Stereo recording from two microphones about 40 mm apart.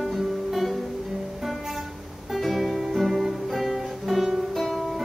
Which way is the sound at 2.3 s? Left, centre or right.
Centre.